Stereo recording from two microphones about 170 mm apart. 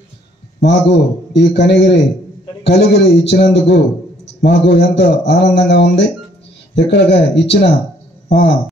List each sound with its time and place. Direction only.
0.6 s a man's voice: 85° left